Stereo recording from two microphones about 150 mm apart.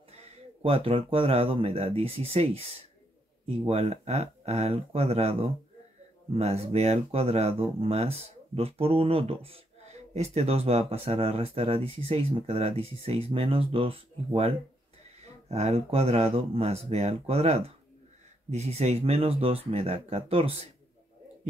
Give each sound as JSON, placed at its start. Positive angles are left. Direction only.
{"t": 0.7, "sound": "speech", "side_deg": -40}